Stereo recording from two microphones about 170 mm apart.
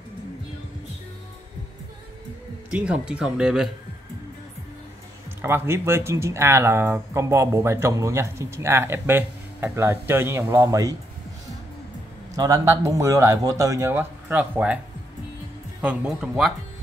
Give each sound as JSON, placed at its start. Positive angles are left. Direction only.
{"t": 2.7, "sound": "speech", "side_deg": -5}
{"t": 5.4, "sound": "speech", "side_deg": -15}
{"t": 12.4, "sound": "a man's voice", "side_deg": -20}
{"t": 15.8, "sound": "speech", "side_deg": -5}